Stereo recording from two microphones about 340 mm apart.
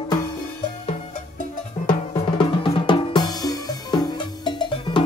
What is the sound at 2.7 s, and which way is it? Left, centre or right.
Drum, centre.